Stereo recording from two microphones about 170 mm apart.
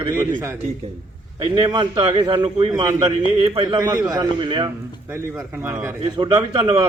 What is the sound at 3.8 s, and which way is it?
Speech, 20° right (ahead or behind).